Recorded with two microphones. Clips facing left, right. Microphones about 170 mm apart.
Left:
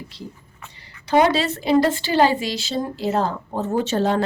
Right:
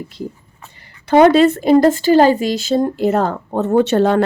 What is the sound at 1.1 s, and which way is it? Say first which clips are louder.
Speech: right 8 dB; 55° right (ahead or behind).